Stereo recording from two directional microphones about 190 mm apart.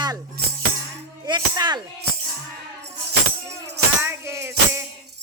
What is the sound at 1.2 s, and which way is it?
Music, 20° right (ahead or behind).